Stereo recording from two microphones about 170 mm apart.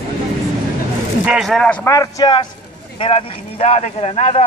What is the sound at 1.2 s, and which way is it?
Speech, 5° right (ahead or behind).